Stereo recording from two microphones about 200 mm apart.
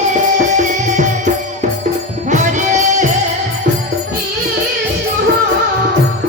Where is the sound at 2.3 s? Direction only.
40° right (ahead or behind).